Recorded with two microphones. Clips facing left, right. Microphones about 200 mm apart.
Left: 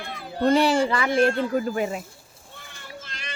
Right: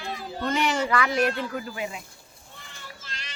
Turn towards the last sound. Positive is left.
turn(degrees=50)  # may be behind; listen again after turning